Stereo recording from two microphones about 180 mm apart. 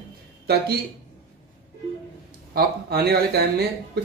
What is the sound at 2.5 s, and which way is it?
Speech, 60° right (ahead or behind).